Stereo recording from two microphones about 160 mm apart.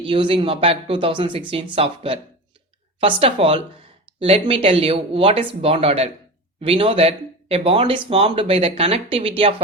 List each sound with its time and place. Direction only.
0.0 s speech: 35° right (ahead or behind)